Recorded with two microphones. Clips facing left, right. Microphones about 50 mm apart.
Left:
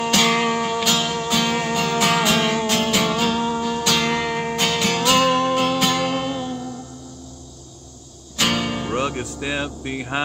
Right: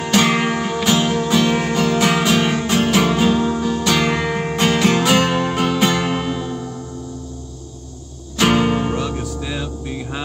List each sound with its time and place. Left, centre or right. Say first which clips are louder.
0.1 s music: right 4 dB; centre
8.4 s music: right 6 dB; centre
8.9 s music: even; left